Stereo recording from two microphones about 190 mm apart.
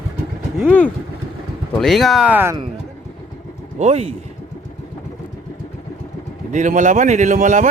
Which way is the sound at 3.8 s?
35° right (ahead or behind).